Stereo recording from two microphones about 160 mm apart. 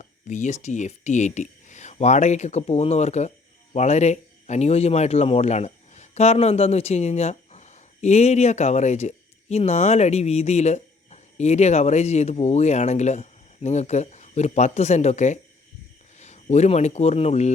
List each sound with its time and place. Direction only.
0.0 s speech: 50° left (ahead or behind)